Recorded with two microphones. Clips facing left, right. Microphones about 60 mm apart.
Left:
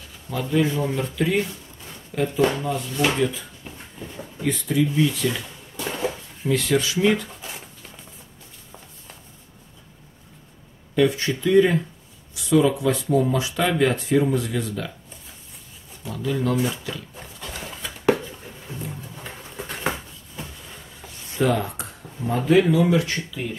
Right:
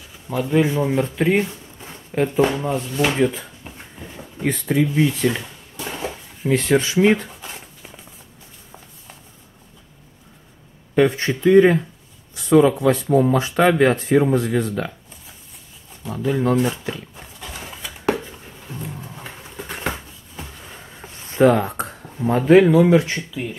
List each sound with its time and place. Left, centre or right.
0.3 s speech: right
2.9 s speech: centre
3.2 s speech: right
3.7 s a sound: centre
4.4 s speech: right
5.8 s a sound: centre
6.5 s speech: right
7.2 s dog: centre
11.0 s speech: right
16.1 s speech: right
17.1 s a sound: centre
21.0 s a sound: right
21.4 s speech: right
23.4 s speech: centre